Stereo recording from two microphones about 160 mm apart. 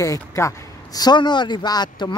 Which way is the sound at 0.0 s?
20° left (ahead or behind).